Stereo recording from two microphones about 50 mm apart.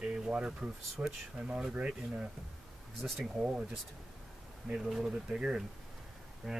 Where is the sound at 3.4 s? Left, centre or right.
Centre.